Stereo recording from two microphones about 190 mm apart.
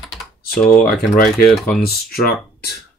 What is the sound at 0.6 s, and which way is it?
Speech, 5° left (ahead or behind).